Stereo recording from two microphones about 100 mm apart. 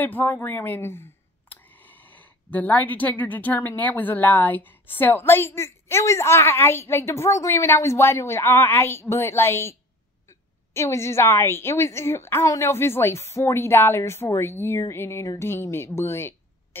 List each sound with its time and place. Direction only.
0.0 s speech: 20° left (ahead or behind)